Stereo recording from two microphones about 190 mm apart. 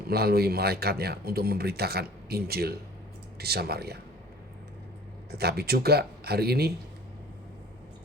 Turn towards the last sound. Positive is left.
turn(degrees=-55)  # may be behind; listen again after turning